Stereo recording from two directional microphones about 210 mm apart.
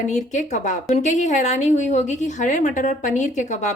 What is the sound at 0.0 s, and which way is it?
A woman's voice, 35° left (ahead or behind).